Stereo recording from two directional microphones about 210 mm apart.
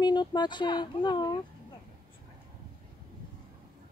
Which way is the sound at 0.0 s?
20° left (ahead or behind).